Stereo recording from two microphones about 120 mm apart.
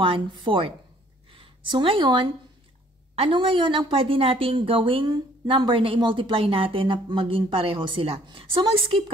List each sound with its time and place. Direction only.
0.4 s a woman's voice: 45° right (ahead or behind)